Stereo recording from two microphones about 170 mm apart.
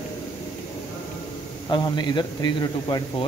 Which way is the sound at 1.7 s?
25° left (ahead or behind).